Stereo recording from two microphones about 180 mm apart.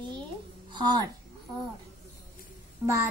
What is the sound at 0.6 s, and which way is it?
Speech, 25° right (ahead or behind).